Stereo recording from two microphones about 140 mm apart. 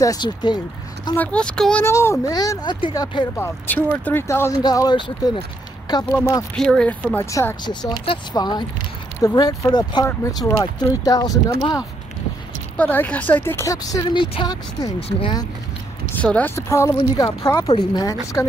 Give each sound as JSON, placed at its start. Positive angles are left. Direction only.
{"t": 0.0, "sound": "speech", "side_deg": 30}
{"t": 1.1, "sound": "speech", "side_deg": 10}
{"t": 1.9, "sound": "speech", "side_deg": 20}
{"t": 3.3, "sound": "speech", "side_deg": 15}
{"t": 4.6, "sound": "speech", "side_deg": 30}
{"t": 6.1, "sound": "speech", "side_deg": 25}
{"t": 6.5, "sound": "speech", "side_deg": 5}
{"t": 7.2, "sound": "speech", "side_deg": 20}
{"t": 8.0, "sound": "speech", "side_deg": 35}
{"t": 12.7, "sound": "speech", "side_deg": 10}
{"t": 15.0, "sound": "speech", "side_deg": 45}
{"t": 16.2, "sound": "speech", "side_deg": 10}
{"t": 16.5, "sound": "speech", "side_deg": 20}